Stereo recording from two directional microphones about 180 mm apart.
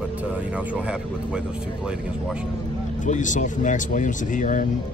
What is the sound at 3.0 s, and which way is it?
Speech, 45° left (ahead or behind).